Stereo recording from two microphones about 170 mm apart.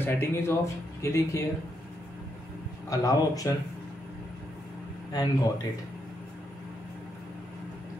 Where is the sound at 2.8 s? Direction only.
20° left (ahead or behind).